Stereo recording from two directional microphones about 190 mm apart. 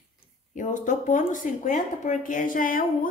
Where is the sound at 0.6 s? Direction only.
40° left (ahead or behind).